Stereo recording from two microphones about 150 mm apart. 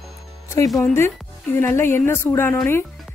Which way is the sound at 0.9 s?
15° left (ahead or behind).